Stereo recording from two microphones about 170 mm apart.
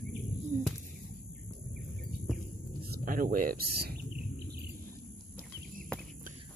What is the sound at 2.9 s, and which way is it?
Bird, 55° right (ahead or behind).